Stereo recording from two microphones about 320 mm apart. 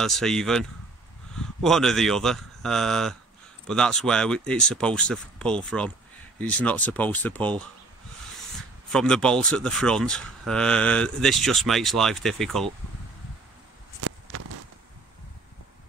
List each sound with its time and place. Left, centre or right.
0.0 s speech: centre
8.9 s speech: centre
14.0 s a sound: right